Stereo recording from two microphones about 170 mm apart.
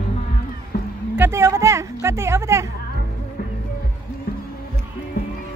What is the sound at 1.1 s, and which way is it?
A woman's voice, 15° right (ahead or behind).